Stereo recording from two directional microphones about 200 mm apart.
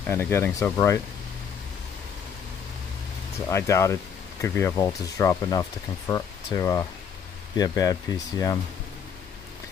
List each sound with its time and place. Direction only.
0.1 s speech: 10° left (ahead or behind)
3.4 s speech: 15° left (ahead or behind)